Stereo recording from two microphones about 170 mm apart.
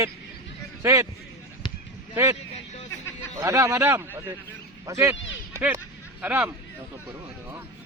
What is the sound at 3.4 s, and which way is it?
A man's voice, 20° right (ahead or behind).